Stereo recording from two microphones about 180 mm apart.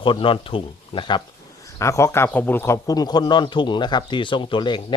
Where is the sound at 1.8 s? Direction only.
15° left (ahead or behind).